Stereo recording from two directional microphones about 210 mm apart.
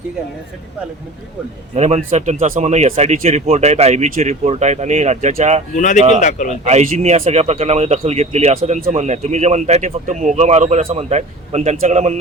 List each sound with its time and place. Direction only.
1.7 s speech: 30° right (ahead or behind)
5.7 s a man's voice: 35° left (ahead or behind)
6.7 s speech: 30° right (ahead or behind)